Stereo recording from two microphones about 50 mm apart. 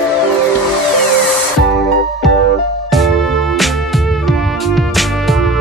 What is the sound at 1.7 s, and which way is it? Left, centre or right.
Music, centre.